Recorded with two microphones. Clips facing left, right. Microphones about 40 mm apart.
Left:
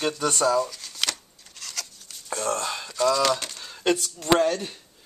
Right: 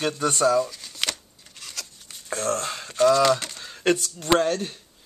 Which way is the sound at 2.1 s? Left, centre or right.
Right.